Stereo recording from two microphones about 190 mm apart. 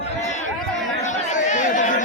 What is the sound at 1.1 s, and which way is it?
Chatter, 40° left (ahead or behind).